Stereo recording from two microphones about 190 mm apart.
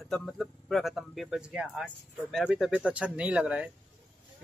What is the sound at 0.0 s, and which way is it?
Speech, centre (ahead or behind).